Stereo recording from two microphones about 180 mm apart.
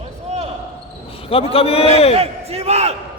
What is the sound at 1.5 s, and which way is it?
Speech, 35° left (ahead or behind).